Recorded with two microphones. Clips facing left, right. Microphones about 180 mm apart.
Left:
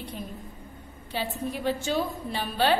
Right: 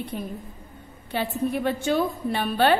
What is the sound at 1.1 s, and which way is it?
A woman's voice, 60° right (ahead or behind).